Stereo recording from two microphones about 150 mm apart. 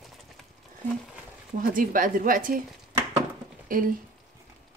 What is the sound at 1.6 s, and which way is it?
A woman's voice, 65° right (ahead or behind).